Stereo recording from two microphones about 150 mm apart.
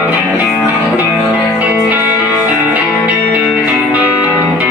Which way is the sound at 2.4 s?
10° right (ahead or behind).